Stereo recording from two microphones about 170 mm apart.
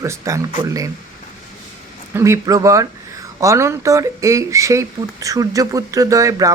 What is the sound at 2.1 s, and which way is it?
Speech, 15° right (ahead or behind).